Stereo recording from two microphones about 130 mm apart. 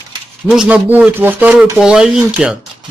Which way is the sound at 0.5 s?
5° right (ahead or behind).